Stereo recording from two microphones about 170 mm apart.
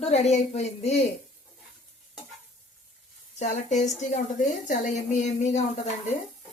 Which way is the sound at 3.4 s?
45° left (ahead or behind).